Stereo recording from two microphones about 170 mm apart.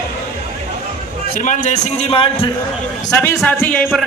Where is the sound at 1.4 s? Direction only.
50° left (ahead or behind).